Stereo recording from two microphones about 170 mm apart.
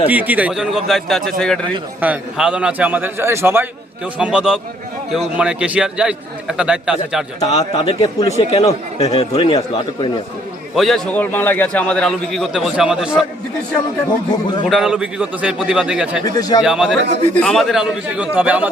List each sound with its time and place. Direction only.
0.1 s a man's voice: 10° right (ahead or behind)
7.3 s a man's voice: 35° left (ahead or behind)
10.8 s a man's voice: centre (ahead or behind)
14.7 s a man's voice: 5° right (ahead or behind)
16.2 s speech: 20° left (ahead or behind)
16.6 s a man's voice: 5° right (ahead or behind)